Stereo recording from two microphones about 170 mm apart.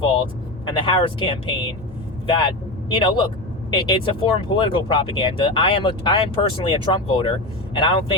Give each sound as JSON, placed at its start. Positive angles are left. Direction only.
{"t": 0.0, "sound": "speech", "side_deg": 30}